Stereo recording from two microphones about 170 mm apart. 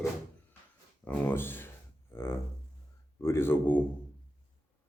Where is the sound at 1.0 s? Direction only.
10° left (ahead or behind).